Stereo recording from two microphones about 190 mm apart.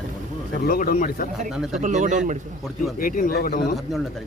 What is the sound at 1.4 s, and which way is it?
Speech, 5° right (ahead or behind).